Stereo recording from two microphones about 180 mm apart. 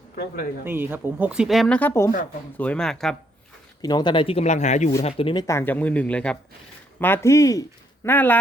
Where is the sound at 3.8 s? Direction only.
20° left (ahead or behind).